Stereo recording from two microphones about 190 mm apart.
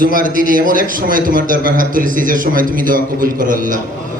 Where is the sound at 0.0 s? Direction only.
45° right (ahead or behind).